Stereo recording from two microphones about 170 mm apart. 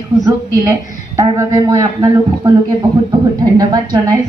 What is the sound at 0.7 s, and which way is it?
A man's voice, 15° right (ahead or behind).